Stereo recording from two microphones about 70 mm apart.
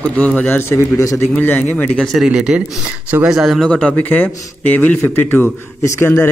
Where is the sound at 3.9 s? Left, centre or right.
Left.